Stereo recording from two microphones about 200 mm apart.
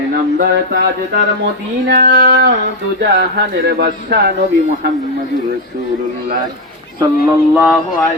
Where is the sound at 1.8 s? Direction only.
55° right (ahead or behind).